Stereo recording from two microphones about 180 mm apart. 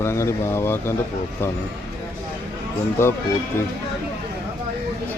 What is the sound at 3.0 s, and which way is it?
Speech, 15° left (ahead or behind).